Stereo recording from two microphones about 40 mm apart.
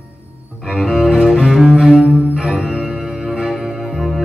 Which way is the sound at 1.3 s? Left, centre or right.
Centre.